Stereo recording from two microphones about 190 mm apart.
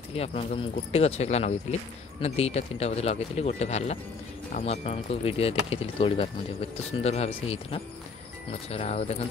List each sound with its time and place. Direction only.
0.1 s speech: 35° left (ahead or behind)